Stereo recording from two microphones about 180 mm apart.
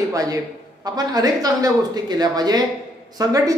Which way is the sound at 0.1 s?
20° right (ahead or behind).